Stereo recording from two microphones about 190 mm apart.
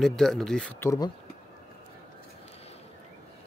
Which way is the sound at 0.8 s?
15° left (ahead or behind).